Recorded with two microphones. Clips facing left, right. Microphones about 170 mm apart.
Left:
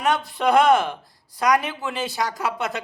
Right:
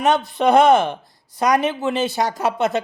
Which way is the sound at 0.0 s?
20° right (ahead or behind).